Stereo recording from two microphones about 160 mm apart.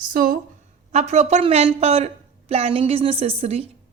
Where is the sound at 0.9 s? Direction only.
45° right (ahead or behind).